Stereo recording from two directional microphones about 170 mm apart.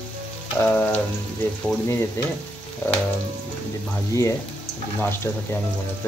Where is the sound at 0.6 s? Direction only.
10° left (ahead or behind).